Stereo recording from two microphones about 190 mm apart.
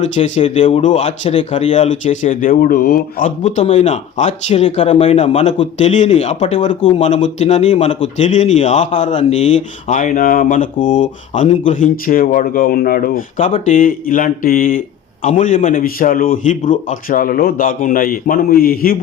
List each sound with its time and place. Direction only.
0.0 s a man's voice: 35° left (ahead or behind)